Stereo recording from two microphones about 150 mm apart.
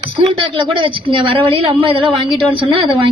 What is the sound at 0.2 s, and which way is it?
A woman's voice, 35° right (ahead or behind).